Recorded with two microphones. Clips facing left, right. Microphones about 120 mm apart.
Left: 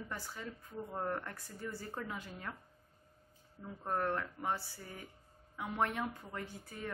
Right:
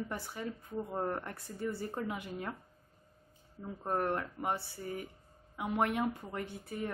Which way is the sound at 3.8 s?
20° right (ahead or behind).